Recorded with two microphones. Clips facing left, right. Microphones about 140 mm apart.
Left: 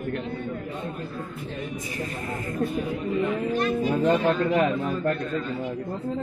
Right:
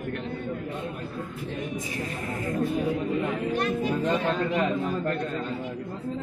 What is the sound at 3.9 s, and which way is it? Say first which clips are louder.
Speech: left 4 dB; 50° left (ahead or behind).